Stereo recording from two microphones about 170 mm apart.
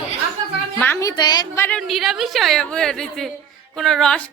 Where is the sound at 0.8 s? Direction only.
15° left (ahead or behind).